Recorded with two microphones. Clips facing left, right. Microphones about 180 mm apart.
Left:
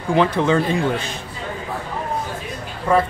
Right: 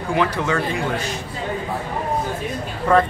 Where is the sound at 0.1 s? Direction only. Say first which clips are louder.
Left 4 dB; 25° left (ahead or behind).